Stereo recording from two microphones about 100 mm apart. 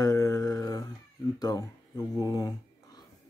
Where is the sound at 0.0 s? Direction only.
40° left (ahead or behind).